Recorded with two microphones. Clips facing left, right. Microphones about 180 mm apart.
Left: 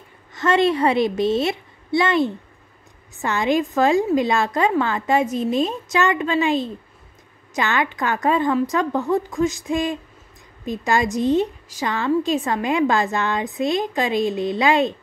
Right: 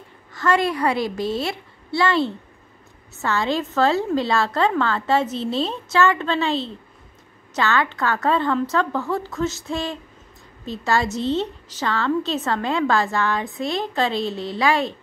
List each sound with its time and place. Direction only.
0.3 s a woman's voice: 20° left (ahead or behind)